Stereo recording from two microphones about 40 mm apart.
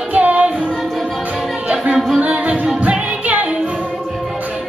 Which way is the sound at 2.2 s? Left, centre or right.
Right.